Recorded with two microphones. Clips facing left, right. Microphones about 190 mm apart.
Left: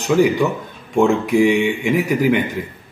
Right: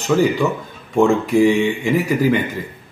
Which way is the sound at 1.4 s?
15° left (ahead or behind).